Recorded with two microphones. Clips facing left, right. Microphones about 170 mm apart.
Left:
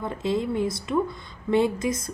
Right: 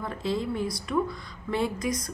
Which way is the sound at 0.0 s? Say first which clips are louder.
Left 3 dB; 20° left (ahead or behind).